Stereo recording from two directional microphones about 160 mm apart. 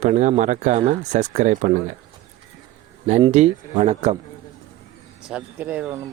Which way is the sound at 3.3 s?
45° right (ahead or behind).